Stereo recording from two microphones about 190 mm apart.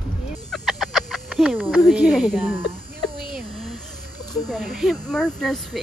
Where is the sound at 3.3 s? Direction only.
Centre (ahead or behind).